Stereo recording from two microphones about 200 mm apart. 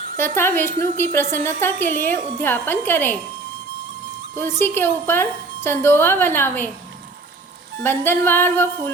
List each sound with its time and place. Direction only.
0.2 s a woman's voice: 10° left (ahead or behind)
4.4 s a woman's voice: 10° left (ahead or behind)
7.8 s a woman's voice: 10° left (ahead or behind)